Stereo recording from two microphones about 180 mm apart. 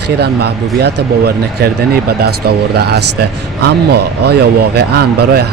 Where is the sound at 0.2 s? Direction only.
65° right (ahead or behind).